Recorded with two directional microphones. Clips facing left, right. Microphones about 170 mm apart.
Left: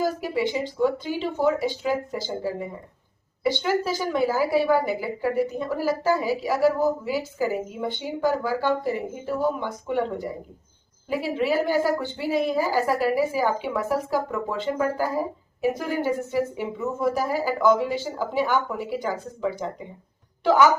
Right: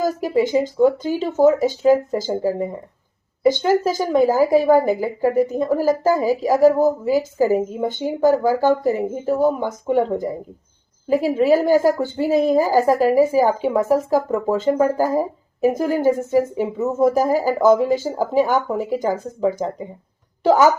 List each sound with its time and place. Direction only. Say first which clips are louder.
0.0 s a woman's voice: right 6 dB; 40° right (ahead or behind)